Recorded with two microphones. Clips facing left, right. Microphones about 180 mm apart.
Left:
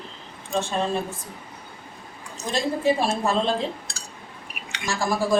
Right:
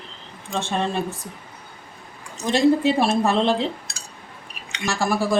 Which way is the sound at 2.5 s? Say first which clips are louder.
Right 5 dB; 70° right (ahead or behind).